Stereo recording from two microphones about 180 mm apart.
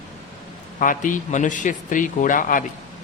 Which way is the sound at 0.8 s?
45° left (ahead or behind).